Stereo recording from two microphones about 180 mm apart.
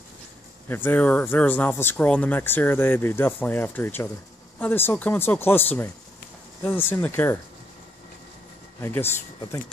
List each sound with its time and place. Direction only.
0.7 s speech: 10° left (ahead or behind)
8.8 s speech: 15° left (ahead or behind)